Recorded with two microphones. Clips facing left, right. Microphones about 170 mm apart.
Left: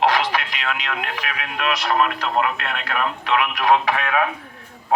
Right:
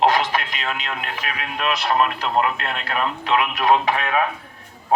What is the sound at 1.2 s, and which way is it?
Speech, 35° right (ahead or behind).